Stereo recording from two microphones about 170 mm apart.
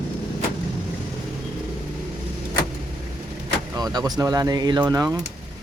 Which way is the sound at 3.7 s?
20° right (ahead or behind).